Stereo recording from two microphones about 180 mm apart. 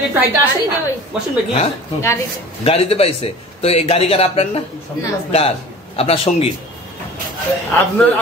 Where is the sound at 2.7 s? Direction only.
35° left (ahead or behind).